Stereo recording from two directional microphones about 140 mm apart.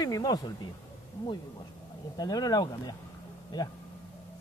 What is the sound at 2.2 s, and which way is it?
Speech, 30° left (ahead or behind).